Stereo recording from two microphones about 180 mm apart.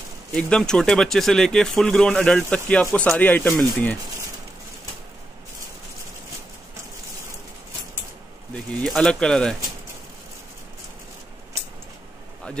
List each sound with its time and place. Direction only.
0.3 s speech: 5° left (ahead or behind)
8.8 s speech: 5° left (ahead or behind)